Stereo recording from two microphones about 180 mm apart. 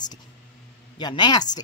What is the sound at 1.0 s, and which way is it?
Speech, 25° left (ahead or behind).